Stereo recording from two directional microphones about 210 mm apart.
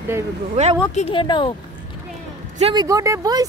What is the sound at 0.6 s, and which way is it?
Speech, 35° right (ahead or behind).